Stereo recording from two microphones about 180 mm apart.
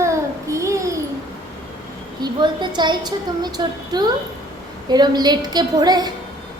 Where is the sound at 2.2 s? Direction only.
25° right (ahead or behind).